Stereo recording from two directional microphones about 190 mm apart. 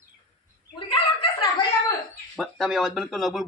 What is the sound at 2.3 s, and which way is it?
A man's voice, centre (ahead or behind).